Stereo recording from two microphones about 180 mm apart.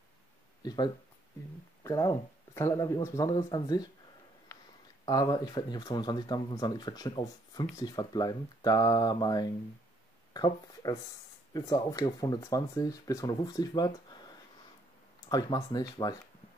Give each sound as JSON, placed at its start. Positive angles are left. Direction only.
{"t": 0.6, "sound": "speech", "side_deg": 25}
{"t": 5.0, "sound": "speech", "side_deg": 20}
{"t": 15.2, "sound": "speech", "side_deg": 20}